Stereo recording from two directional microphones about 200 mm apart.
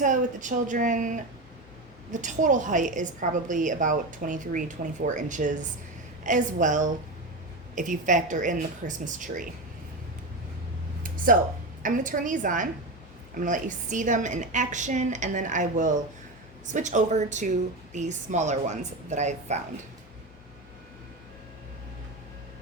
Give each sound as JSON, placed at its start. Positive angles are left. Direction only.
{"t": 0.0, "sound": "a woman's voice", "side_deg": -40}
{"t": 11.8, "sound": "a woman's voice", "side_deg": -40}